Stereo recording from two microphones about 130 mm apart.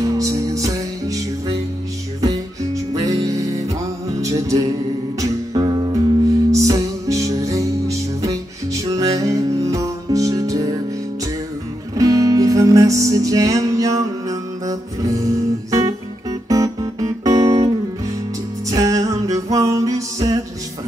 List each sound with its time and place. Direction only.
0.0 s music: 25° right (ahead or behind)
11.9 s music: 25° right (ahead or behind)
18.7 s music: 25° right (ahead or behind)